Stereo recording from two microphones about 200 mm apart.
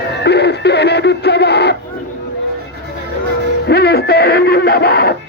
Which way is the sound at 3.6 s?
55° left (ahead or behind).